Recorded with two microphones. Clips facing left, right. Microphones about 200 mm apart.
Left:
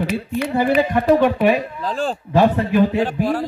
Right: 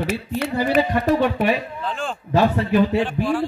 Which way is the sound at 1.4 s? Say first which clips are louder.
Left 4 dB; 40° left (ahead or behind).